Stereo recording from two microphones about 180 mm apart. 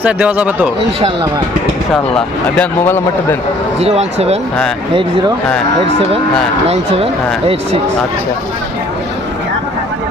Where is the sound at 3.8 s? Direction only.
35° right (ahead or behind).